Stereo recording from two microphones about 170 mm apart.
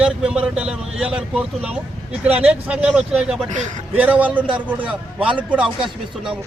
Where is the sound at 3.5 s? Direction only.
45° right (ahead or behind).